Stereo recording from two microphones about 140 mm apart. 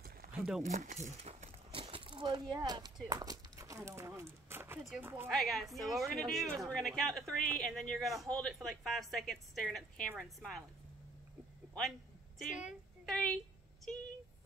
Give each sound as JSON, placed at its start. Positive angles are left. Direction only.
{"t": 0.2, "sound": "a sound", "side_deg": -90}
{"t": 0.7, "sound": "speech", "side_deg": -60}
{"t": 1.2, "sound": "a sound", "side_deg": -45}
{"t": 2.5, "sound": "a woman's voice", "side_deg": -30}
{"t": 5.3, "sound": "speech", "side_deg": 0}
{"t": 12.4, "sound": "a woman's voice", "side_deg": -5}
{"t": 13.0, "sound": "a woman's voice", "side_deg": 5}